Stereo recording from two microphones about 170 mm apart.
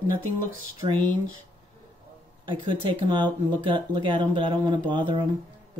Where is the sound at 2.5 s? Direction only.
30° right (ahead or behind).